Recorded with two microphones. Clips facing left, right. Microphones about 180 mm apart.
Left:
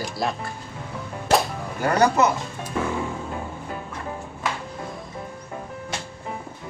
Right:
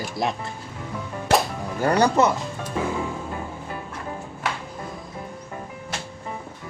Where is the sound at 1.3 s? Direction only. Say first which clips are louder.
Even; centre (ahead or behind).